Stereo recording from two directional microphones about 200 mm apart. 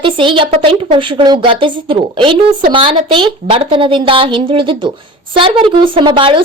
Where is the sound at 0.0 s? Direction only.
25° right (ahead or behind).